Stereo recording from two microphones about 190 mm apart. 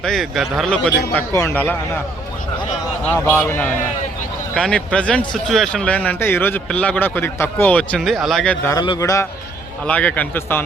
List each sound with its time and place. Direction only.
0.0 s speech: centre (ahead or behind)
1.0 s speech: 15° left (ahead or behind)
3.1 s speech: 10° left (ahead or behind)
8.6 s speech: 20° left (ahead or behind)
9.8 s speech: 5° left (ahead or behind)